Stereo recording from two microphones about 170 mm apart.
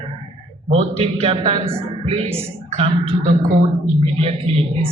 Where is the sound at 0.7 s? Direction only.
35° right (ahead or behind).